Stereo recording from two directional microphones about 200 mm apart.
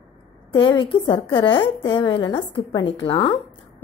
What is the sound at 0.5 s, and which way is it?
A woman's voice, 25° left (ahead or behind).